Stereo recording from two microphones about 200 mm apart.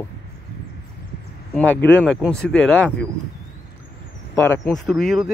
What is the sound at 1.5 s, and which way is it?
Speech, 5° left (ahead or behind).